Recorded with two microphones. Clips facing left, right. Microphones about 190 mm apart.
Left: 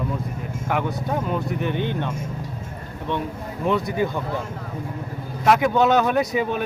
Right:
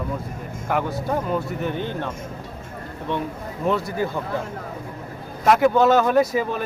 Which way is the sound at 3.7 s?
5° right (ahead or behind).